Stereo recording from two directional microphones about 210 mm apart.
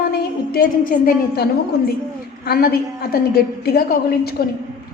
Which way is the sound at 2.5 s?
45° left (ahead or behind).